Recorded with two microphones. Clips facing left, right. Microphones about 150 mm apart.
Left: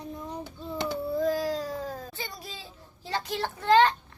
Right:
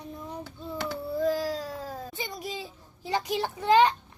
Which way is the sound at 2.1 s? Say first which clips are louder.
Right 4 dB; 15° right (ahead or behind).